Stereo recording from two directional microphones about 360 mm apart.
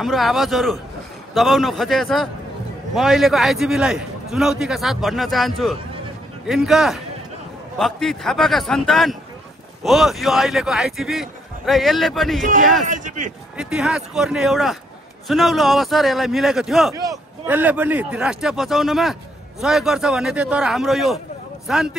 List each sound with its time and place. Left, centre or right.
0.0 s a man's voice: centre
12.8 s a man's voice: right
13.6 s a man's voice: centre